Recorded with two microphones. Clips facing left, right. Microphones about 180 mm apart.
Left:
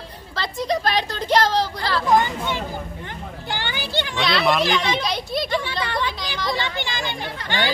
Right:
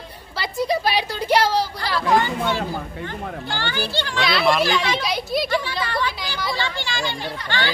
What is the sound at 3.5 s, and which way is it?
Children playing, 15° left (ahead or behind).